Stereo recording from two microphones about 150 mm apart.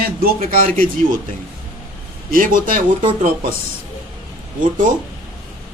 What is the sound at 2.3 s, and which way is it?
Speech, 70° right (ahead or behind).